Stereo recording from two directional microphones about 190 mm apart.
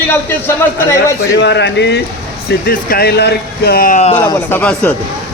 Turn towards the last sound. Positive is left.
turn(degrees=10)  # may be behind; listen again after turning